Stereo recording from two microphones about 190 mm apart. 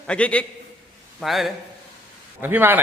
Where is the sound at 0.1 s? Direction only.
5° left (ahead or behind).